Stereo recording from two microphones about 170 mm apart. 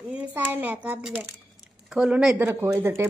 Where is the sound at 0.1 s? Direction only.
10° right (ahead or behind).